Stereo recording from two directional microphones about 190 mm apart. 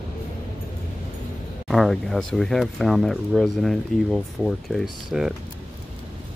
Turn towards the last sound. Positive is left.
turn(degrees=0)  # may be behind; listen again after turning